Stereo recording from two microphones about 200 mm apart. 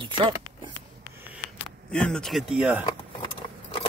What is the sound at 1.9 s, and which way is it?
Speech, 5° left (ahead or behind).